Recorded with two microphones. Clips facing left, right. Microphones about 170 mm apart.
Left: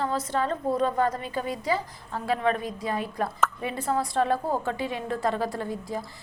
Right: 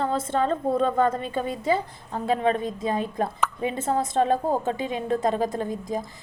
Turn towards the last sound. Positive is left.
turn(degrees=-20)  # may be behind; listen again after turning